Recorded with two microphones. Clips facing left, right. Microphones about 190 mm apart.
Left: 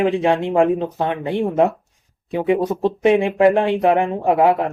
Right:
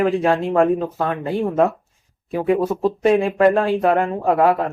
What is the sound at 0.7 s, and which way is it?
Speech, centre (ahead or behind).